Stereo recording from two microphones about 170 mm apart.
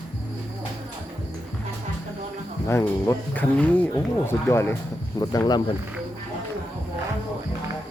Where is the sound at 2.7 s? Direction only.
15° left (ahead or behind).